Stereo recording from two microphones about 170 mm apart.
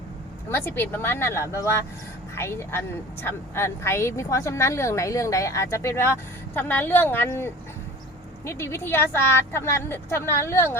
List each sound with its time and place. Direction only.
0.4 s a woman's voice: 15° left (ahead or behind)